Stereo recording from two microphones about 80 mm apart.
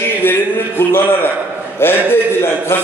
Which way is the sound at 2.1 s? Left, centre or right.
Left.